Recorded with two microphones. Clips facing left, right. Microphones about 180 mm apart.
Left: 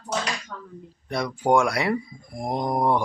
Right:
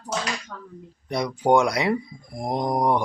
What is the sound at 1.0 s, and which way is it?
A man's voice, 20° right (ahead or behind).